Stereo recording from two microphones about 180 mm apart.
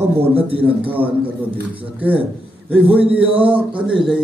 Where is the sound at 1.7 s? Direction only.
10° right (ahead or behind).